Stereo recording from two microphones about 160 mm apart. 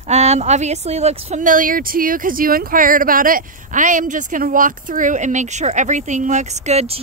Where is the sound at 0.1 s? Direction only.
45° right (ahead or behind).